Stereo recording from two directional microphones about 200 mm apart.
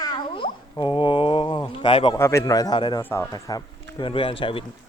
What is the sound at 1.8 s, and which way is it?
Speech, 25° left (ahead or behind).